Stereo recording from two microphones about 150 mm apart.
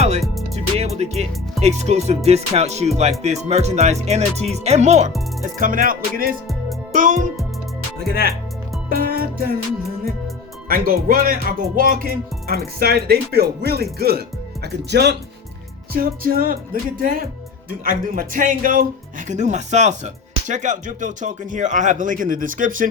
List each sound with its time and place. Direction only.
0.0 s music: 45° right (ahead or behind)
5.5 s speech: 65° right (ahead or behind)
6.9 s speech: 55° right (ahead or behind)
8.9 s music: 80° right
10.7 s music: 85° right
15.9 s music: 80° right
17.0 s speech: 65° right (ahead or behind)
19.3 s music: 50° right (ahead or behind)
20.5 s speech: 55° right (ahead or behind)